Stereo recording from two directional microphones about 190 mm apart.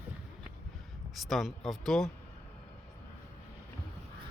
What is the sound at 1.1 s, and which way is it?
Speech, centre (ahead or behind).